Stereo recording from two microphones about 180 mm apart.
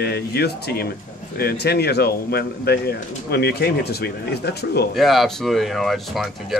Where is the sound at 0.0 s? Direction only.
65° left (ahead or behind).